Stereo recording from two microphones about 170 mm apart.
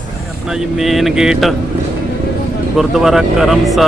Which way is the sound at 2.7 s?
Centre (ahead or behind).